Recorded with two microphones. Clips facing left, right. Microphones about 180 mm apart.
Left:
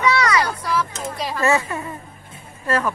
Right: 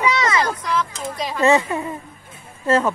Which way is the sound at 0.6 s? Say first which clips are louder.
Even; 5° left (ahead or behind).